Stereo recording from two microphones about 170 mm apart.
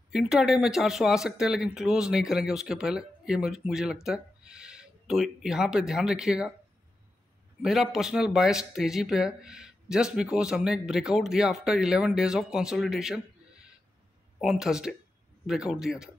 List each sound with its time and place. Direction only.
0.1 s speech: centre (ahead or behind)
7.6 s speech: centre (ahead or behind)